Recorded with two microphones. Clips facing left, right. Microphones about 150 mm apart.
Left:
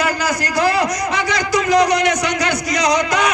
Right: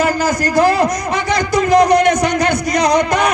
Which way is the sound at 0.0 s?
50° right (ahead or behind).